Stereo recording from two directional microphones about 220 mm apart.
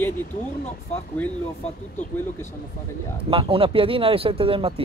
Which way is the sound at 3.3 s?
25° right (ahead or behind).